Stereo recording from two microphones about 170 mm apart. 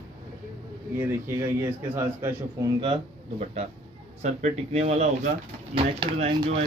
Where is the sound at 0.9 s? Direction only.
15° right (ahead or behind).